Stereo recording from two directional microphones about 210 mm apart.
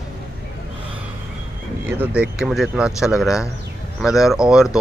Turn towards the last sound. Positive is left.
turn(degrees=-5)  # may be behind; listen again after turning